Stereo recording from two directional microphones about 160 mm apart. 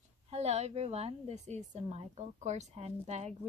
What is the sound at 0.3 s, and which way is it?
Speech, 45° right (ahead or behind).